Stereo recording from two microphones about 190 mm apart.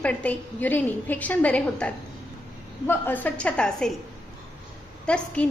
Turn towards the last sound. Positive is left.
turn(degrees=5)  # may be behind; listen again after turning